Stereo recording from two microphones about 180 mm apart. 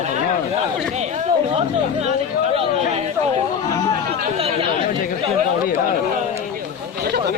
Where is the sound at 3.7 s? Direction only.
20° left (ahead or behind).